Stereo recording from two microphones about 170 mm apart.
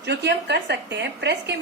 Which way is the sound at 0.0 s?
80° right.